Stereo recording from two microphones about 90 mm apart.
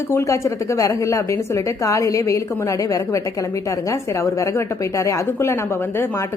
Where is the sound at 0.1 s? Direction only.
30° left (ahead or behind).